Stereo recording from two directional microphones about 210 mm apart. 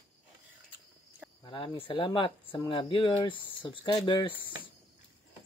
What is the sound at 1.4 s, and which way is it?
Speech, 25° left (ahead or behind).